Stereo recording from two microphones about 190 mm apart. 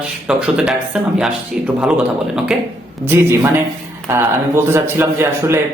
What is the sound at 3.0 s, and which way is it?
A man's voice, 10° right (ahead or behind).